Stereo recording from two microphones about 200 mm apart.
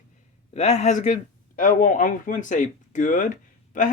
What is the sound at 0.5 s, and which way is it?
Speech, 35° left (ahead or behind).